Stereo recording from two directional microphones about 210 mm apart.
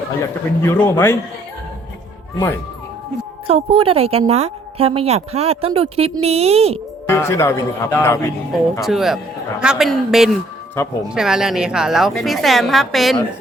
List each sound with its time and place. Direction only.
0.6 s speech: 10° left (ahead or behind)
3.4 s a woman's voice: 25° right (ahead or behind)
7.1 s speech: 10° left (ahead or behind)
8.8 s a woman's voice: centre (ahead or behind)